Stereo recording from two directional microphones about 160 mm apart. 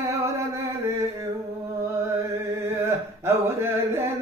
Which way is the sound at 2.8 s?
15° right (ahead or behind).